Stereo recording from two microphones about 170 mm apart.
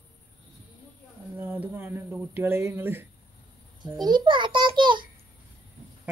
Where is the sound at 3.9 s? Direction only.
25° right (ahead or behind).